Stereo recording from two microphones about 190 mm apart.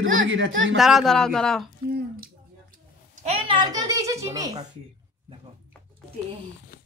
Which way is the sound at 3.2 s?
30° right (ahead or behind).